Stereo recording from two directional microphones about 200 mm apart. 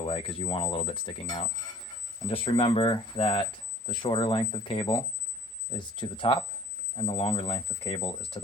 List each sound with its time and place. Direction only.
0.0 s speech: 25° left (ahead or behind)